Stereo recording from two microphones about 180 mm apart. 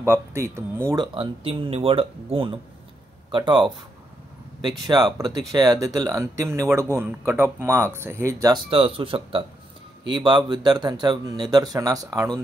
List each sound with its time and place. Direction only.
0.0 s speech: 15° right (ahead or behind)
1.0 s speech: 30° right (ahead or behind)
8.6 s speech: 30° right (ahead or behind)